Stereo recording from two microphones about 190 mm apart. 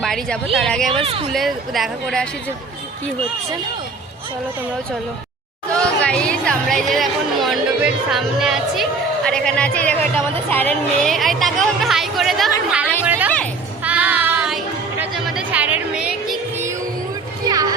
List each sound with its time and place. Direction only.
0.0 s a woman's voice: centre (ahead or behind)
1.0 s speech: 30° right (ahead or behind)
1.3 s a woman's voice: centre (ahead or behind)
5.7 s a woman's voice: 5° left (ahead or behind)
13.8 s music: 5° right (ahead or behind)
17.5 s music: 20° right (ahead or behind)